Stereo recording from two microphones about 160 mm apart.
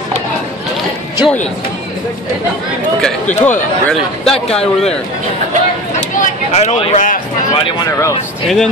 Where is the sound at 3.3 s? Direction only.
10° left (ahead or behind).